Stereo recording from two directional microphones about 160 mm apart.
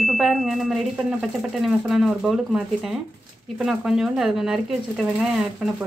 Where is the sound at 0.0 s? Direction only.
Centre (ahead or behind).